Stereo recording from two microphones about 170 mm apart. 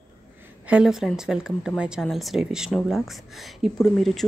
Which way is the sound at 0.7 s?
5° right (ahead or behind).